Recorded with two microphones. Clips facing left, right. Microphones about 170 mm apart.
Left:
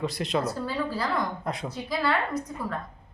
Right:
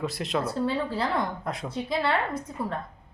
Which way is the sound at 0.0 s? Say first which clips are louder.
Left 1 dB; centre (ahead or behind).